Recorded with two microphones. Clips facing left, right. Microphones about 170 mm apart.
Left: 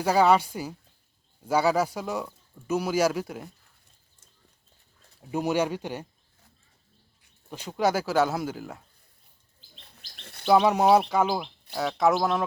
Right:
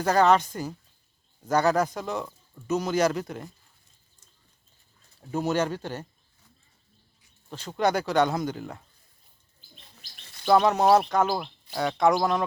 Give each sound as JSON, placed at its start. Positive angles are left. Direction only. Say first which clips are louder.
{"t": 0.0, "sound": "speech", "louder": "even", "side_deg": 10}
{"t": 5.3, "sound": "speech", "louder": "even", "side_deg": 10}
{"t": 7.5, "sound": "speech", "louder": "even", "side_deg": 10}
{"t": 10.2, "sound": "bird", "louder": "left 9 dB", "side_deg": 60}
{"t": 10.5, "sound": "speech", "louder": "even", "side_deg": 10}